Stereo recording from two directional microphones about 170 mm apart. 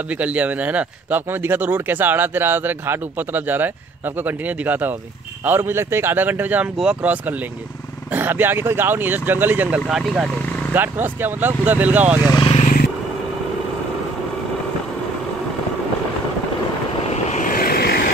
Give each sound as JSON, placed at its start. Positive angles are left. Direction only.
{"t": 0.2, "sound": "speech", "side_deg": -10}
{"t": 12.4, "sound": "speech", "side_deg": 30}
{"t": 17.1, "sound": "vehicle", "side_deg": 45}